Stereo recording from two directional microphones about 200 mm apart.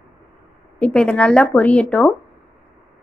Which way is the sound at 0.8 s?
5° left (ahead or behind).